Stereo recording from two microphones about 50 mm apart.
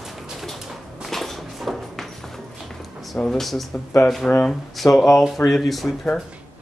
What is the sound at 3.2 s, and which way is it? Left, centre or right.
Speech, centre.